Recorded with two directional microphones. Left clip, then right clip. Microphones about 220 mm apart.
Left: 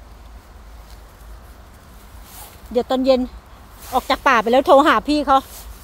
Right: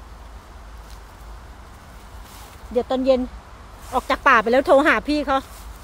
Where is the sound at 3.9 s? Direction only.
10° left (ahead or behind).